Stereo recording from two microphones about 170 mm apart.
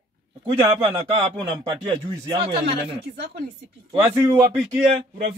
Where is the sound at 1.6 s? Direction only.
30° right (ahead or behind).